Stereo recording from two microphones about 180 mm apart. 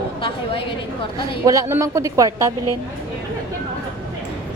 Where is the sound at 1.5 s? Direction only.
15° right (ahead or behind).